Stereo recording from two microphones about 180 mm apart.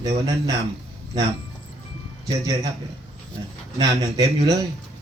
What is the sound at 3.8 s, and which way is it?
Speech, 20° right (ahead or behind).